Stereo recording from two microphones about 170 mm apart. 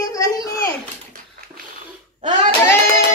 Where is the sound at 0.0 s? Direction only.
20° left (ahead or behind).